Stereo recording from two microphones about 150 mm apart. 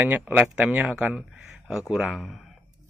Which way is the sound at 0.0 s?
10° right (ahead or behind).